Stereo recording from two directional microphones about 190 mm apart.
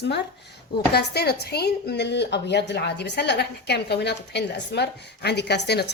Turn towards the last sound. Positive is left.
turn(degrees=60)  # may be behind; listen again after turning